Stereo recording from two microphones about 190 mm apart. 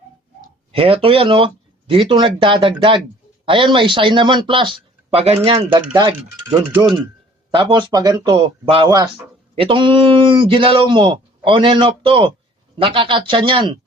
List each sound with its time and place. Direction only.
0.7 s a man's voice: 30° right (ahead or behind)